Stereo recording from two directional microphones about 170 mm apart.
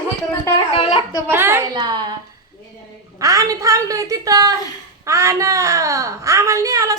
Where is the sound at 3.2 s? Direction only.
20° right (ahead or behind).